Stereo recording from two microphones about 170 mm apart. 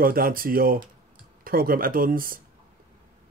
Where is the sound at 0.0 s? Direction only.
55° right (ahead or behind).